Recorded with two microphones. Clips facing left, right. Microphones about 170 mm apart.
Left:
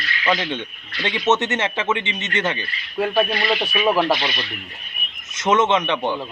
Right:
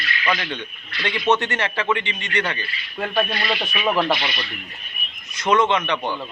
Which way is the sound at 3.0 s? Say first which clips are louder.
Left 4 dB; 5° left (ahead or behind).